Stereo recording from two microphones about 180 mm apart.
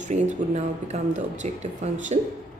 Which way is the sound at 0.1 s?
40° right (ahead or behind).